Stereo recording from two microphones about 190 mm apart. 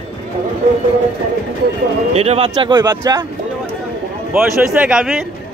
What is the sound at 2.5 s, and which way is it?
Speech, 20° right (ahead or behind).